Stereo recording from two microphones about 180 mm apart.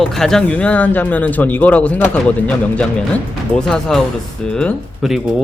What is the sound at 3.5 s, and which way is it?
Speech, 5° left (ahead or behind).